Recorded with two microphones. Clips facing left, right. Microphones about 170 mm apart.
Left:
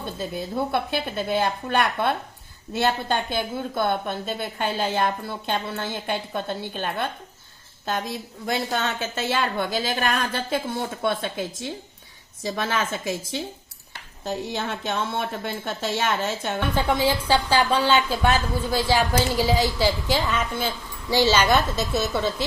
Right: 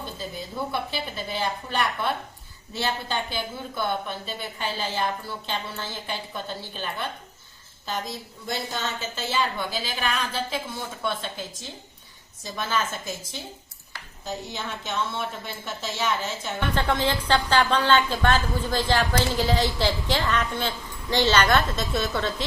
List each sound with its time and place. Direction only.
0.2 s a woman's voice: 60° left (ahead or behind)
8.4 s a woman's voice: 65° left (ahead or behind)
16.7 s a woman's voice: 10° left (ahead or behind)